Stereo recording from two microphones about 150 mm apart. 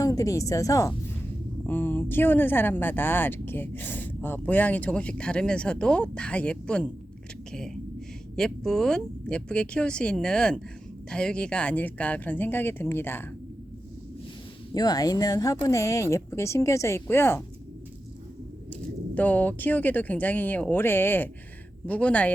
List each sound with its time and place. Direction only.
0.0 s a woman's voice: 20° left (ahead or behind)
14.7 s speech: 25° left (ahead or behind)
18.7 s speech: 10° left (ahead or behind)